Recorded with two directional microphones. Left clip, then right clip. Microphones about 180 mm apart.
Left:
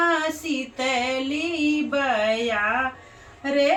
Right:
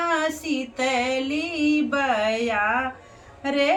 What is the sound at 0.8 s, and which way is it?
Music, 10° right (ahead or behind).